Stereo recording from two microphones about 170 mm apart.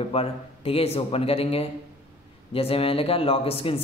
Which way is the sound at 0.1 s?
35° left (ahead or behind).